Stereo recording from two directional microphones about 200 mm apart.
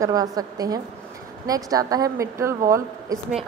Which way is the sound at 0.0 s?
20° right (ahead or behind).